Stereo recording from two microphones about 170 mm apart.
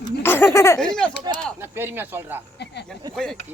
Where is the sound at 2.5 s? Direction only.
85° left.